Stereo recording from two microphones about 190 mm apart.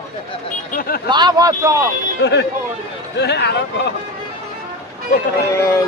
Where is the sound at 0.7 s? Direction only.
50° left (ahead or behind).